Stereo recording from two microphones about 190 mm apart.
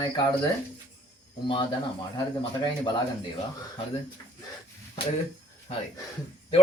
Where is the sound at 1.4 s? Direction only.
25° left (ahead or behind).